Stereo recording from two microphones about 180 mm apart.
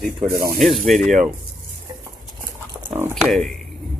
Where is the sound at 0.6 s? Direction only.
Centre (ahead or behind).